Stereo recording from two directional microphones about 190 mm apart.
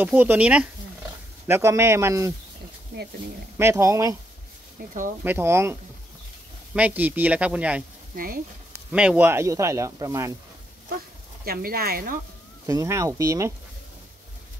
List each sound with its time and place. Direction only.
0.0 s speech: 10° right (ahead or behind)
3.5 s speech: 15° right (ahead or behind)
5.2 s speech: 10° right (ahead or behind)
8.9 s speech: 5° right (ahead or behind)
11.4 s speech: 50° right (ahead or behind)
12.6 s speech: 15° right (ahead or behind)